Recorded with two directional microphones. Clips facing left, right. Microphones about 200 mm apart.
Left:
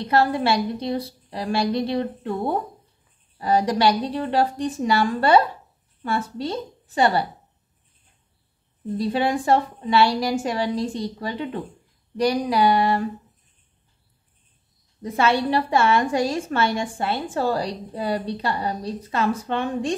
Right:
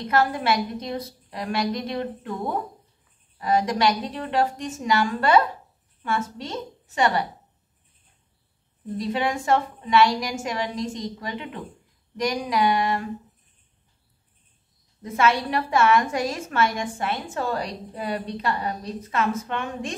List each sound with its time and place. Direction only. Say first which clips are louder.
0.0 s a woman's voice: left 3 dB; 30° left (ahead or behind)
8.9 s a woman's voice: left 3 dB; 35° left (ahead or behind)
15.0 s a woman's voice: left 1 dB; 30° left (ahead or behind)